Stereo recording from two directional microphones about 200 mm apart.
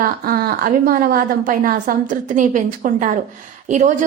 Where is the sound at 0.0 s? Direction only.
45° right (ahead or behind).